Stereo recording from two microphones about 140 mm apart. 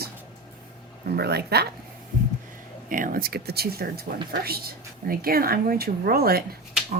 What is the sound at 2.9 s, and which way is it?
Speech, 70° right (ahead or behind).